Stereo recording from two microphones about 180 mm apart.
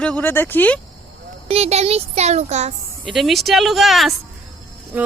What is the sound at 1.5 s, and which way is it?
A child's voice, 35° right (ahead or behind).